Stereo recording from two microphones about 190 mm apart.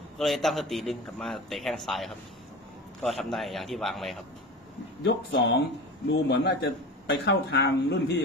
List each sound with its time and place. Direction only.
0.2 s a man's voice: centre (ahead or behind)
5.0 s speech: 65° left (ahead or behind)